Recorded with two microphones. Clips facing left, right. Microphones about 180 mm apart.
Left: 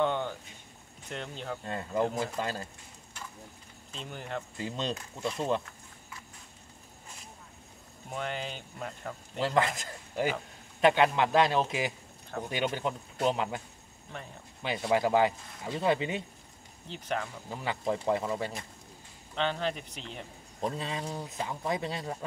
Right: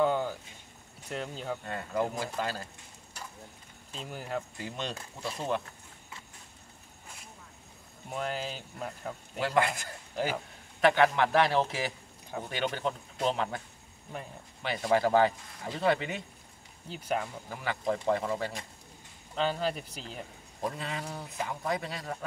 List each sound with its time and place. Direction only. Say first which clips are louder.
0.0 s a sound: right 2 dB; 5° right (ahead or behind)
1.1 s speech: right 2 dB; 5° right (ahead or behind)
1.7 s speech: left 3 dB; 20° left (ahead or behind)
4.0 s speech: right 2 dB; 5° right (ahead or behind)
4.6 s speech: left 3 dB; 20° left (ahead or behind)
8.1 s speech: right 1 dB; centre (ahead or behind)
9.6 s speech: right 1 dB; 20° left (ahead or behind)
14.6 s speech: right 1 dB; 15° left (ahead or behind)
16.9 s speech: right 2 dB; 5° right (ahead or behind)
17.5 s speech: left 1 dB; 20° left (ahead or behind)
19.3 s speech: right 1 dB; 5° right (ahead or behind)
20.6 s speech: left 2 dB; 20° left (ahead or behind)